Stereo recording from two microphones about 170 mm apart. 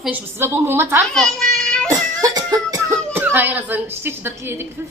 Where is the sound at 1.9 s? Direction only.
20° right (ahead or behind).